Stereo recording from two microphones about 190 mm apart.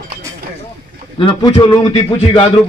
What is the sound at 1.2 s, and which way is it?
Speech, 25° left (ahead or behind).